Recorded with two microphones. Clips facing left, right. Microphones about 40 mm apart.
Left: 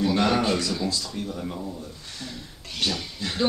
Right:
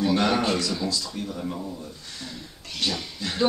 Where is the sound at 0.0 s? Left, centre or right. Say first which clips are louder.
Even; centre.